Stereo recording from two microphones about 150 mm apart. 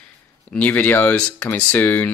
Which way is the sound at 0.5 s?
10° left (ahead or behind).